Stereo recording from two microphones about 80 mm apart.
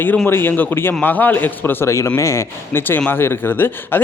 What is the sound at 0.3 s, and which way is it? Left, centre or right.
A man's voice, left.